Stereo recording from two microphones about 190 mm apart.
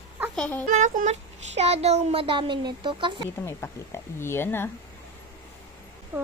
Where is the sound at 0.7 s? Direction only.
40° right (ahead or behind).